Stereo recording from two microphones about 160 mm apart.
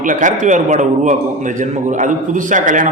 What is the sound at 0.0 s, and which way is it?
A man's voice, 55° right (ahead or behind).